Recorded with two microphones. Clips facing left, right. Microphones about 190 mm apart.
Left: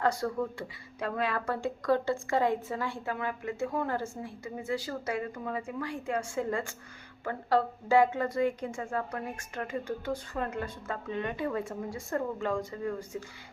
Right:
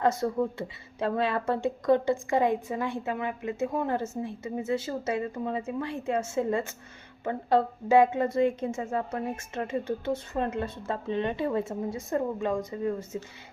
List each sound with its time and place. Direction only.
0.0 s speech: 20° right (ahead or behind)